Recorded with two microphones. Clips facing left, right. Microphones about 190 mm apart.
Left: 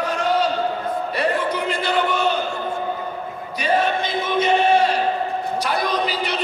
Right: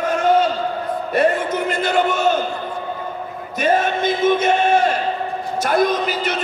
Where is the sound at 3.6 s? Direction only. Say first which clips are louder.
Right 3 dB; 45° right (ahead or behind).